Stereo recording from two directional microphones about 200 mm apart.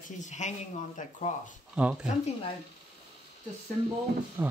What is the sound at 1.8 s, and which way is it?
Speech, 5° right (ahead or behind).